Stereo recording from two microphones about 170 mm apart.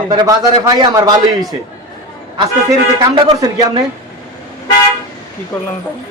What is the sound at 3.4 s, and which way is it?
Speech, 20° right (ahead or behind).